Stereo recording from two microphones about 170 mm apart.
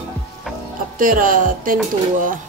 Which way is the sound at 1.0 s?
55° right (ahead or behind).